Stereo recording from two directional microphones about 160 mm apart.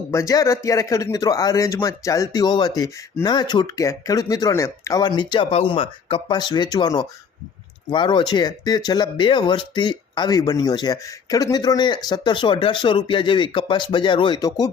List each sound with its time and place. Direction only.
0.1 s speech: 20° left (ahead or behind)